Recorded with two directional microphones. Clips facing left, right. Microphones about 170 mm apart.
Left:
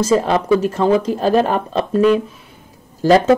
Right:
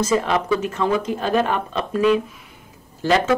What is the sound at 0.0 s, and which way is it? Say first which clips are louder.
Speech: left 4 dB; 35° left (ahead or behind).